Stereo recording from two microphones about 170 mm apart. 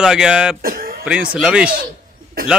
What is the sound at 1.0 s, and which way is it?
Speech, 5° right (ahead or behind).